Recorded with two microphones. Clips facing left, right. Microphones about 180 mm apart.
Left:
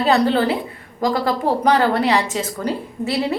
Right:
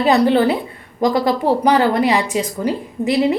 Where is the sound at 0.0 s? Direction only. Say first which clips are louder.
Right 3 dB; 15° right (ahead or behind).